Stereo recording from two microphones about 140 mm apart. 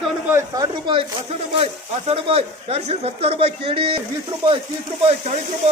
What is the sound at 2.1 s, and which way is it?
Speech, 45° right (ahead or behind).